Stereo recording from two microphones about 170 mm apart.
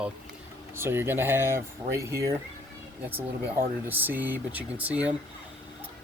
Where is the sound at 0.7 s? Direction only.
15° right (ahead or behind).